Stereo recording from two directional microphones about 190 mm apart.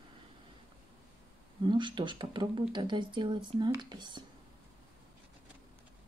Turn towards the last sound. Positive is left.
turn(degrees=-25)  # may be behind; listen again after turning